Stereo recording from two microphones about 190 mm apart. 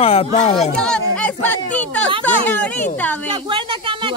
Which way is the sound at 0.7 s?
5° left (ahead or behind).